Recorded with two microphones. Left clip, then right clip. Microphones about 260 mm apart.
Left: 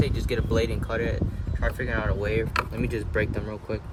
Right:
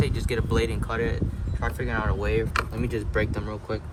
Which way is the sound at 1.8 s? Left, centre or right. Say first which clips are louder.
Right 1 dB; centre.